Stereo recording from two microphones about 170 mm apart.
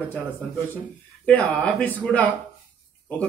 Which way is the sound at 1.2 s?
10° left (ahead or behind).